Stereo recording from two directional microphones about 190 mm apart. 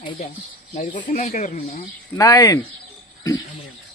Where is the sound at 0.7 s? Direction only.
40° left (ahead or behind).